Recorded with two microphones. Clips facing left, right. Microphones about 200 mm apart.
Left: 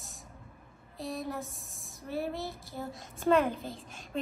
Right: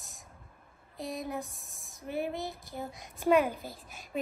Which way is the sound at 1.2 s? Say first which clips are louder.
Even; centre (ahead or behind).